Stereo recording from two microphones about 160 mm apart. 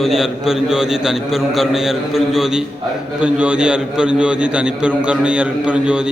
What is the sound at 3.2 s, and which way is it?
A man's voice, 10° right (ahead or behind).